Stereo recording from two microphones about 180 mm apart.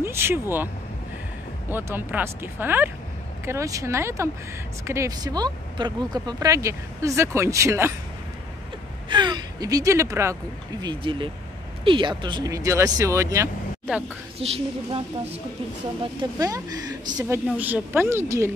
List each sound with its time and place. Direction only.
0.0 s speech: 15° right (ahead or behind)
1.7 s speech: 10° right (ahead or behind)
9.1 s speech: 25° right (ahead or behind)
10.8 s speech: 25° right (ahead or behind)
14.4 s a woman's voice: 35° right (ahead or behind)
16.2 s speech: 20° right (ahead or behind)